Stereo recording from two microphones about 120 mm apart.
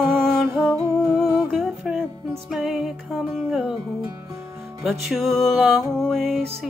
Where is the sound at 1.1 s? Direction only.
5° left (ahead or behind).